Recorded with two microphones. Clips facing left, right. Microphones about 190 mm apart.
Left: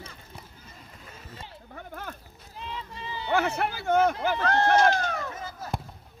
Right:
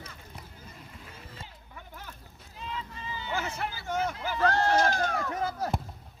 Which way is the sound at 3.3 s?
60° left (ahead or behind).